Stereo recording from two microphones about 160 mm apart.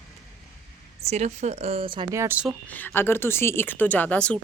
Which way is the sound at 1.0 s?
45° right (ahead or behind).